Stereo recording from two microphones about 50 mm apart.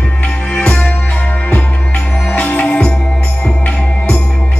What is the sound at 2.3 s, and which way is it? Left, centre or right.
Music, left.